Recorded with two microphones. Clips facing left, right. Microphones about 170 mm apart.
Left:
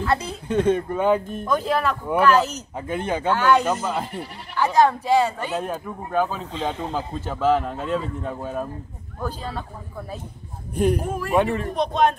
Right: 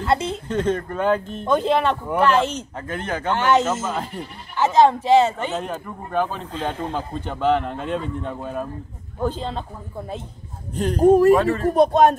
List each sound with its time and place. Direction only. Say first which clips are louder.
0.0 s speech: right 3 dB; 25° right (ahead or behind)
0.5 s speech: left 4 dB; 10° left (ahead or behind)
1.4 s a woman's voice: right 3 dB; 25° right (ahead or behind)
2.7 s speech: left 2 dB; 10° left (ahead or behind)
4.6 s a woman's voice: right 2 dB; 20° right (ahead or behind)
5.5 s speech: left 1 dB; 10° left (ahead or behind)
6.5 s speech: even; 5° right (ahead or behind)
9.2 s a woman's voice: right 5 dB; 20° right (ahead or behind)
10.7 s speech: left 4 dB; 10° left (ahead or behind)
11.0 s speech: right 15 dB; 40° right (ahead or behind)
11.3 s speech: right 1 dB; 20° left (ahead or behind)
11.6 s speech: right 6 dB; 45° right (ahead or behind)